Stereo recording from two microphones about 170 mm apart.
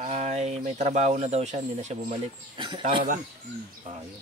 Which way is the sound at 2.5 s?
30° right (ahead or behind).